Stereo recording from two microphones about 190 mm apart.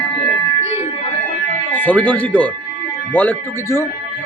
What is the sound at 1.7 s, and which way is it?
A man's voice, 10° left (ahead or behind).